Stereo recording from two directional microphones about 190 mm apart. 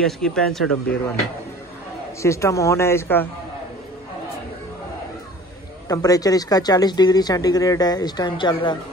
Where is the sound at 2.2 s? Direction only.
15° left (ahead or behind).